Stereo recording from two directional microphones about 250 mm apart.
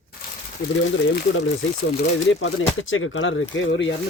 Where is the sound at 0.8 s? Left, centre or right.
Left.